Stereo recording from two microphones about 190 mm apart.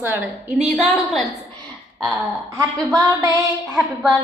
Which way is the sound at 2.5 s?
20° right (ahead or behind).